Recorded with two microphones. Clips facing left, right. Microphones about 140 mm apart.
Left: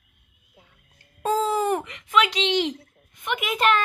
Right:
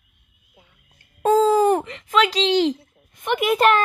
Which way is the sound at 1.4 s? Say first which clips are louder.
Right 7 dB; 35° right (ahead or behind).